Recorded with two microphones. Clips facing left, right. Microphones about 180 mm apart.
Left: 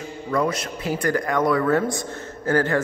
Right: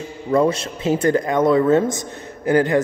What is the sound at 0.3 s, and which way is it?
Speech, 25° right (ahead or behind).